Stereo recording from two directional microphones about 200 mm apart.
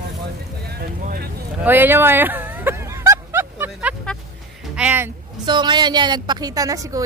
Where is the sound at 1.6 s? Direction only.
10° right (ahead or behind).